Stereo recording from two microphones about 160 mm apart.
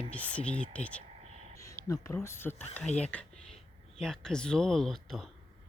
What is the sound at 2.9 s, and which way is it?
Speech, 45° left (ahead or behind).